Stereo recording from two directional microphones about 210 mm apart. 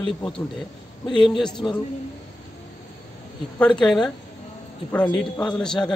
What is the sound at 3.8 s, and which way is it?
Speech, centre (ahead or behind).